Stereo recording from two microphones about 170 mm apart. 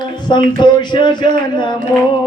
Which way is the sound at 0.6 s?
25° left (ahead or behind).